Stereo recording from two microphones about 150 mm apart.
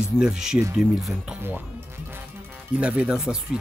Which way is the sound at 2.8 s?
5° right (ahead or behind).